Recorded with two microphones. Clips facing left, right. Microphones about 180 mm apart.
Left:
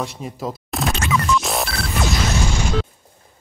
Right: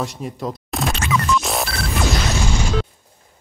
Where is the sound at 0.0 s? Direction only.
Centre (ahead or behind).